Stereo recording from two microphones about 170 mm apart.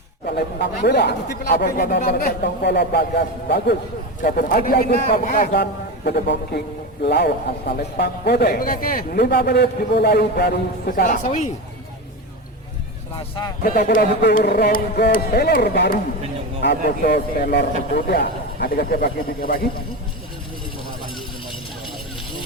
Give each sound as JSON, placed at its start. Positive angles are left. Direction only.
{"t": 0.3, "sound": "a man's voice", "side_deg": 75}
{"t": 4.2, "sound": "a man's voice", "side_deg": 60}
{"t": 5.0, "sound": "a woman's voice", "side_deg": 50}
{"t": 6.1, "sound": "a man's voice", "side_deg": 80}
{"t": 11.0, "sound": "a woman's voice", "side_deg": 45}
{"t": 13.6, "sound": "a man's voice", "side_deg": 60}
{"t": 17.1, "sound": "a man's voice", "side_deg": 60}